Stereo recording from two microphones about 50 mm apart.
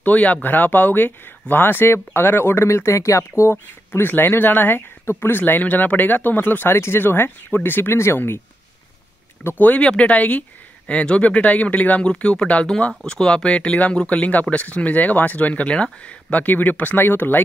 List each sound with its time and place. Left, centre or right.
0.0 s speech: left
4.3 s speech: left
5.5 s speech: left
6.8 s speech: left
9.6 s speech: left